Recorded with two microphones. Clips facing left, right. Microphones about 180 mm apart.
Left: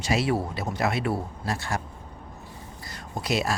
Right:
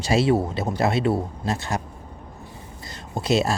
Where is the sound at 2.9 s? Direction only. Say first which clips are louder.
Right 6 dB; 25° right (ahead or behind).